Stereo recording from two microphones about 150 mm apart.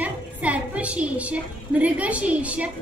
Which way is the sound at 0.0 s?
10° right (ahead or behind).